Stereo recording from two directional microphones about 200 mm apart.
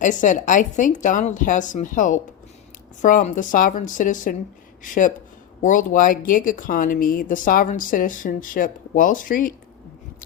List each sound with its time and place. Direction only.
0.0 s a woman's voice: 40° left (ahead or behind)